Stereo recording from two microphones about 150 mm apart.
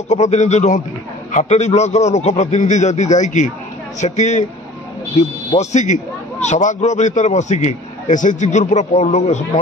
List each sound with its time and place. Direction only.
0.1 s a man's voice: 50° left (ahead or behind)